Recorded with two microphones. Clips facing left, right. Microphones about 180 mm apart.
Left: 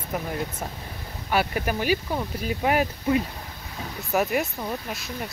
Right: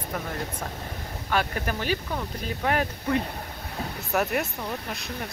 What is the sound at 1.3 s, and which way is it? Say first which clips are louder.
Speech: left 3 dB; 10° left (ahead or behind).